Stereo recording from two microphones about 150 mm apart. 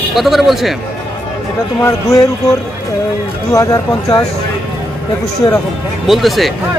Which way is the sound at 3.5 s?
20° left (ahead or behind).